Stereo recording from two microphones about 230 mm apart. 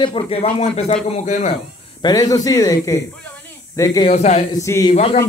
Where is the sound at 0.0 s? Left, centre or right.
Left.